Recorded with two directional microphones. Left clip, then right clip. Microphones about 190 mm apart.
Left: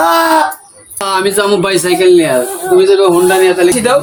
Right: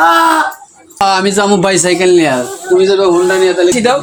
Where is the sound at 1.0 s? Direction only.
40° right (ahead or behind).